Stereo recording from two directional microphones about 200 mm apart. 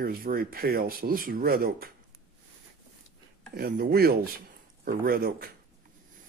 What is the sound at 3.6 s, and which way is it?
Speech, 50° right (ahead or behind).